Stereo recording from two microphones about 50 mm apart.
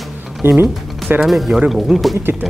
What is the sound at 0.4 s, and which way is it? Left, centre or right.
Speech, right.